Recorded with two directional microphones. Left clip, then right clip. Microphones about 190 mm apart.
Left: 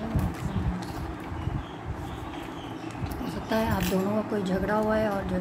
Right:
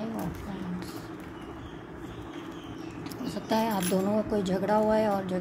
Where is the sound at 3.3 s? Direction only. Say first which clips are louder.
Even; 25° right (ahead or behind).